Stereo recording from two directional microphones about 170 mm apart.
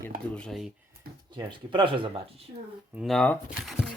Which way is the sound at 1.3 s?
25° right (ahead or behind).